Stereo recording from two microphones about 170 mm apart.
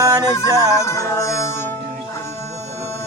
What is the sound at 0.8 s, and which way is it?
Music, 15° left (ahead or behind).